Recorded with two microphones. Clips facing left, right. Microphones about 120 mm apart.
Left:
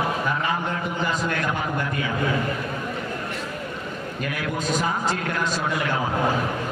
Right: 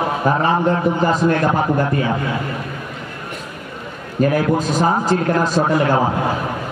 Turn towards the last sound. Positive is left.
turn(degrees=-40)  # may be behind; listen again after turning